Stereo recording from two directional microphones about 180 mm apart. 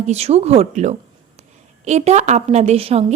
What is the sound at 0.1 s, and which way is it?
A woman's voice, 35° right (ahead or behind).